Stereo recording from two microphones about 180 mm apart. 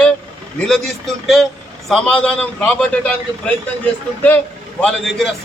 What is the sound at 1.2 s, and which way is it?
A man's voice, centre (ahead or behind).